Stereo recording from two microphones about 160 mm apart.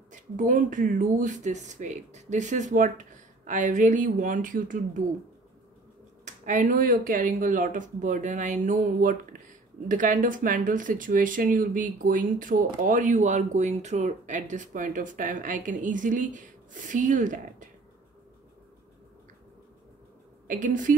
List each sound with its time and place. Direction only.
0.1 s speech: 55° right (ahead or behind)
6.2 s speech: 50° right (ahead or behind)
20.4 s speech: 55° right (ahead or behind)